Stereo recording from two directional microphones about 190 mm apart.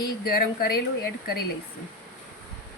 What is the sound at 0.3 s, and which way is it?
Speech, 55° left (ahead or behind).